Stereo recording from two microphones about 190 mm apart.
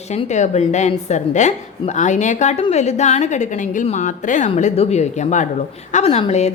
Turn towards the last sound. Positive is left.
turn(degrees=35)  # may be behind; listen again after turning